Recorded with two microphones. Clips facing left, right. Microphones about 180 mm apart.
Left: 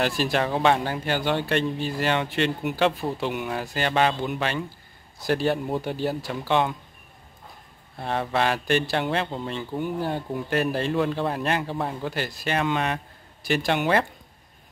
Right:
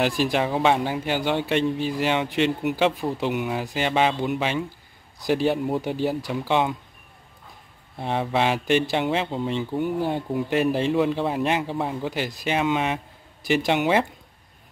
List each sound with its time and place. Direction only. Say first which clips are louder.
0.0 s speech: right 2 dB; 15° right (ahead or behind)
8.0 s speech: right 1 dB; 15° right (ahead or behind)